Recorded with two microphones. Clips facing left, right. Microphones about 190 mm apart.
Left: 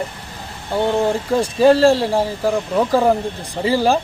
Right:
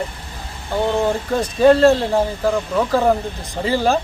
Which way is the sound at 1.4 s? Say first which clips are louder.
Even; 5° left (ahead or behind).